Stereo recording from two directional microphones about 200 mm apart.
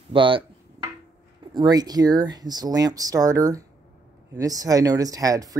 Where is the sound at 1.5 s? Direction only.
20° right (ahead or behind).